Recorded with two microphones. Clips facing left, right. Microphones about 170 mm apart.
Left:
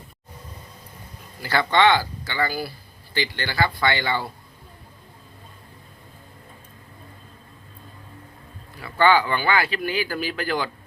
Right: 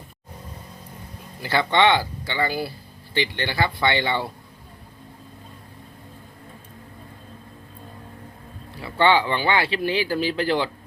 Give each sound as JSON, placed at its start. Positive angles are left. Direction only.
{"t": 1.4, "sound": "speech", "side_deg": -20}
{"t": 8.8, "sound": "speech", "side_deg": -25}